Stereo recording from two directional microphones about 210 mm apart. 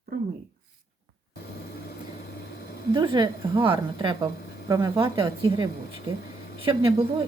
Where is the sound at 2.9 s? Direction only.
20° right (ahead or behind).